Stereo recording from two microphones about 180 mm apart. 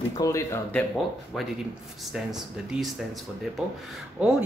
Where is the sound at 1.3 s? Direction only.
Centre (ahead or behind).